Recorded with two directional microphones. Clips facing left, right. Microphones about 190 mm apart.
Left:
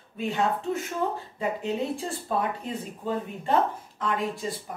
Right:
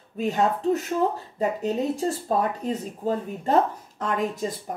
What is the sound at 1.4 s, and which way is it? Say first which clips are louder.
Speech: right 4 dB; 40° right (ahead or behind).